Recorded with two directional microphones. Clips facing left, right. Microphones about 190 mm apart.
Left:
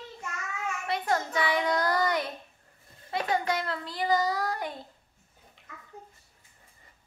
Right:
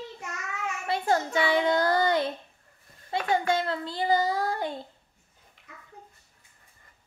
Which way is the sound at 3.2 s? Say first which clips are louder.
Right 4 dB; 25° right (ahead or behind).